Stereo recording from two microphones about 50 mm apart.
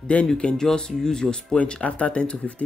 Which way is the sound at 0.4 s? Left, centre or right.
Centre.